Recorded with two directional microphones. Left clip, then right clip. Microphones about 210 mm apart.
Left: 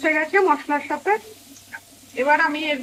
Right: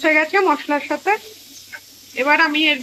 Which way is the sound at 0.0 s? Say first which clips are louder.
Right 3 dB; 5° right (ahead or behind).